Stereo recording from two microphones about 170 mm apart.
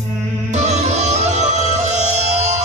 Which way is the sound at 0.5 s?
45° right (ahead or behind).